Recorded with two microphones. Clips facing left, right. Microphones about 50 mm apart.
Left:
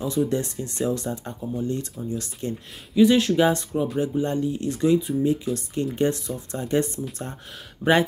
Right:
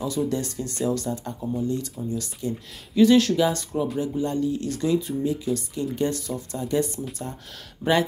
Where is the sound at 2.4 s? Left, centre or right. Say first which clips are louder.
Right 1 dB; left.